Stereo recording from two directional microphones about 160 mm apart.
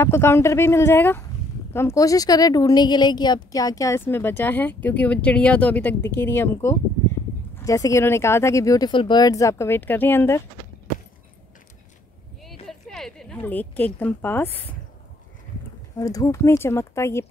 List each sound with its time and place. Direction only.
0.0 s speech: 15° left (ahead or behind)
12.6 s a woman's voice: centre (ahead or behind)
16.0 s speech: 20° left (ahead or behind)